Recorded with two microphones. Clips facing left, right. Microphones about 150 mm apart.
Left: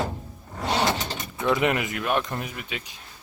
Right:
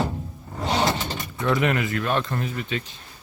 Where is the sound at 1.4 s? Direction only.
15° left (ahead or behind).